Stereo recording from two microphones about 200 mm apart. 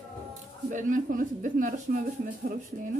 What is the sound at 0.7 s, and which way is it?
Speech, 40° right (ahead or behind).